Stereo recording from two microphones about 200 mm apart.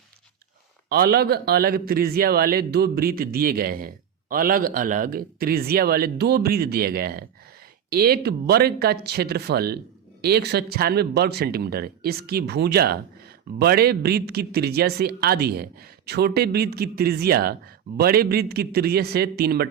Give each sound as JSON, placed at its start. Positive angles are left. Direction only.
{"t": 0.9, "sound": "speech", "side_deg": -50}